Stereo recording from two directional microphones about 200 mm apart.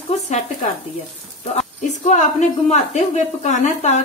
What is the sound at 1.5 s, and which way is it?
Speech, 35° left (ahead or behind).